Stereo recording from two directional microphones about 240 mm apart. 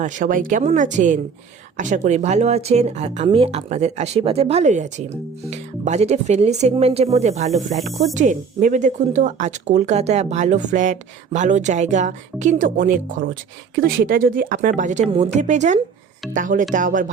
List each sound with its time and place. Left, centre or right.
0.0 s speech: right